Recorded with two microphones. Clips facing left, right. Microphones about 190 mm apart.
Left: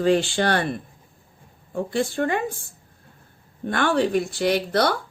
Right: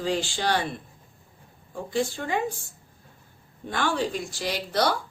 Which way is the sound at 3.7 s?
60° left (ahead or behind).